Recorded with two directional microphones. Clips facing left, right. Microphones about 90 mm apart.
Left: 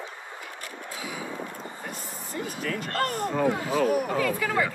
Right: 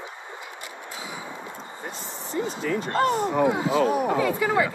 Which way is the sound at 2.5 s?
25° right (ahead or behind).